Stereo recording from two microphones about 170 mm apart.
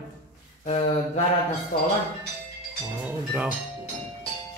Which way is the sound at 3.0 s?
5° right (ahead or behind).